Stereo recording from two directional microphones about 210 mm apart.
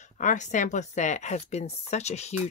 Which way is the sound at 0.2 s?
35° left (ahead or behind).